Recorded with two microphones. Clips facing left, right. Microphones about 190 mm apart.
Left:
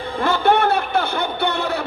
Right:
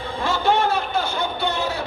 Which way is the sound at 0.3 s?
60° left (ahead or behind).